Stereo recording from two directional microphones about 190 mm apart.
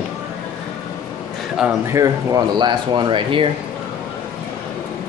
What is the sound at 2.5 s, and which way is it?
Speech, 25° right (ahead or behind).